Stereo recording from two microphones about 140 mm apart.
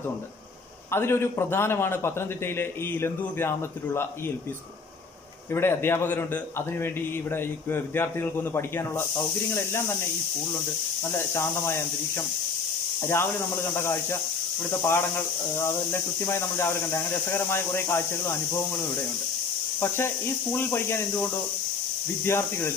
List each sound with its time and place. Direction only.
0.9 s a man's voice: 15° left (ahead or behind)
5.5 s a man's voice: 15° left (ahead or behind)
11.1 s a man's voice: 20° left (ahead or behind)
20.5 s a man's voice: 15° left (ahead or behind)